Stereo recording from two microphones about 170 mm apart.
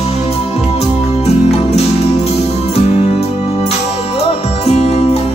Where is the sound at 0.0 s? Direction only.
35° left (ahead or behind).